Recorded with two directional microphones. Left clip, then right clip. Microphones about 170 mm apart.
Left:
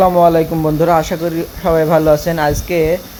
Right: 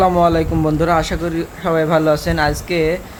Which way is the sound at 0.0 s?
15° left (ahead or behind).